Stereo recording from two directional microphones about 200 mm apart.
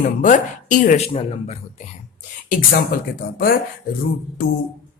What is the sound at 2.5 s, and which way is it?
Speech, 45° left (ahead or behind).